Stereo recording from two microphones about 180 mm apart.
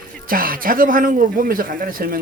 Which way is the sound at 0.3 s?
50° right (ahead or behind).